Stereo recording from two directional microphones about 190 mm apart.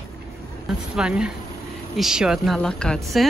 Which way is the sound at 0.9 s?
5° right (ahead or behind).